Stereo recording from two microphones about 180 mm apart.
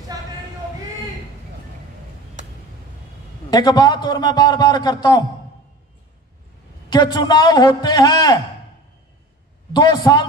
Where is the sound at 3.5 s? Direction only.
25° left (ahead or behind).